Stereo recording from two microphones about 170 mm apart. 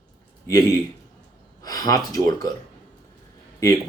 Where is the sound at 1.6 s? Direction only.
20° left (ahead or behind).